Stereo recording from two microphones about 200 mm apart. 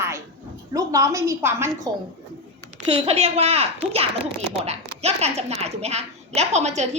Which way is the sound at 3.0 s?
30° right (ahead or behind).